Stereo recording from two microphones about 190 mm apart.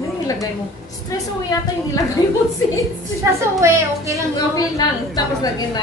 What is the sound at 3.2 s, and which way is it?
A woman's voice, 15° right (ahead or behind).